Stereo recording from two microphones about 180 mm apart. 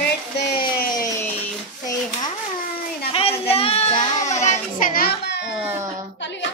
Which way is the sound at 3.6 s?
35° left (ahead or behind).